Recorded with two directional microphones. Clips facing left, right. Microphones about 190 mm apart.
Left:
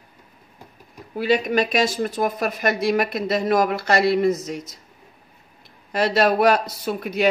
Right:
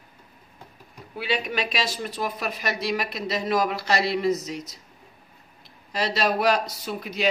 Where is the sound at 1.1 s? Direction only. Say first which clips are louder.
Left 8 dB; 45° left (ahead or behind).